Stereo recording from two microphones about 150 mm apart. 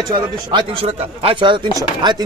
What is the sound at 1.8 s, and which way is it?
Chopping, 25° right (ahead or behind).